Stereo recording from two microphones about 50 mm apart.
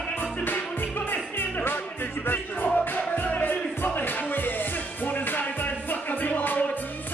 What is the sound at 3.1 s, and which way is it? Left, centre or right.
Music, left.